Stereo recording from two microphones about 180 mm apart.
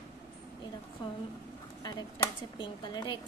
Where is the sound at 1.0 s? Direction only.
25° left (ahead or behind).